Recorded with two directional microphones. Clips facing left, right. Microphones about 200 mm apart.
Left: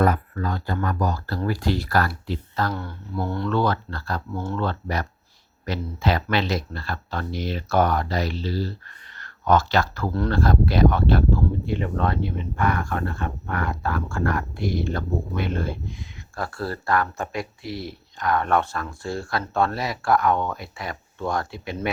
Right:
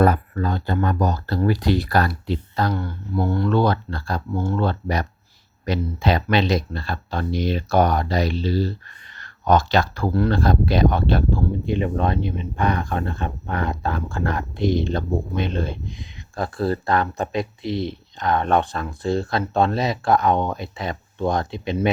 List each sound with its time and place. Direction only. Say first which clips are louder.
0.0 s speech: right 3 dB; 30° right (ahead or behind)
2.7 s speech: right 5 dB; centre (ahead or behind)
3.5 s speech: right 1 dB; 15° right (ahead or behind)